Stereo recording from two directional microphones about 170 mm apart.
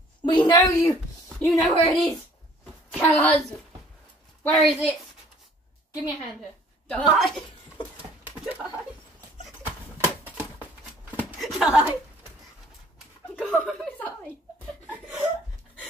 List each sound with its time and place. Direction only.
0.2 s a sound: 25° left (ahead or behind)
0.6 s speech: 15° left (ahead or behind)
1.4 s a woman's voice: centre (ahead or behind)
4.6 s a woman's voice: centre (ahead or behind)
6.9 s a woman's voice: 5° left (ahead or behind)
8.0 s a sound: 10° right (ahead or behind)
13.4 s speech: 5° left (ahead or behind)
14.9 s chuckle: 10° right (ahead or behind)